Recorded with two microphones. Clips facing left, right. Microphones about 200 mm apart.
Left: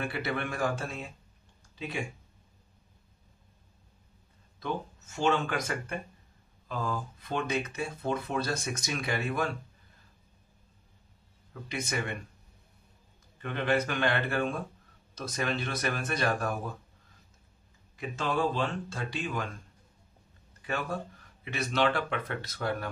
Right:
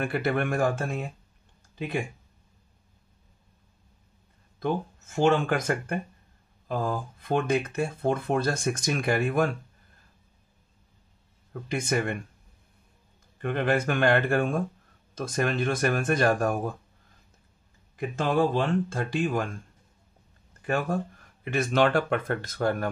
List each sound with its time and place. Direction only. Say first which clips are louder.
0.0 s speech: right 6 dB; 50° right (ahead or behind)
4.6 s speech: right 6 dB; 55° right (ahead or behind)
13.4 s speech: right 3 dB; 50° right (ahead or behind)
17.9 s speech: right 6 dB; 55° right (ahead or behind)
20.6 s speech: right 6 dB; 50° right (ahead or behind)